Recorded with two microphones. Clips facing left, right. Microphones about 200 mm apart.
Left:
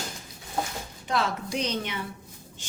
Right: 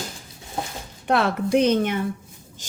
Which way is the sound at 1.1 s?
60° right (ahead or behind).